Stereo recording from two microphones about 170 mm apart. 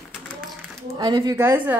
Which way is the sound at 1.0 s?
25° right (ahead or behind).